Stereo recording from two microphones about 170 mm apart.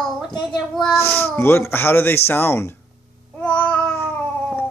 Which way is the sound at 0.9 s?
15° left (ahead or behind).